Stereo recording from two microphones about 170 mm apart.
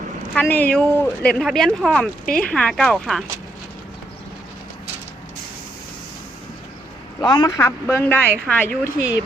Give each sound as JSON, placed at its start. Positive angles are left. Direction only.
{"t": 0.3, "sound": "speech", "side_deg": 10}
{"t": 7.2, "sound": "a woman's voice", "side_deg": 20}
{"t": 7.9, "sound": "speech", "side_deg": 10}